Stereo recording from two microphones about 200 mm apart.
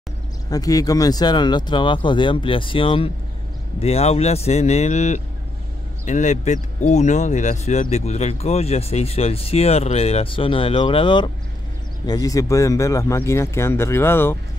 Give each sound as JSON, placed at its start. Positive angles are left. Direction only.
{"t": 0.5, "sound": "speech", "side_deg": 15}